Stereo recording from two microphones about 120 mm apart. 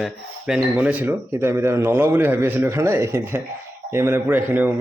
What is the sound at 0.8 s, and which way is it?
A man's voice, 15° right (ahead or behind).